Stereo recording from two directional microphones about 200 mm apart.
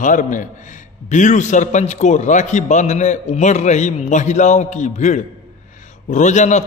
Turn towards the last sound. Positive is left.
turn(degrees=35)  # may be behind; listen again after turning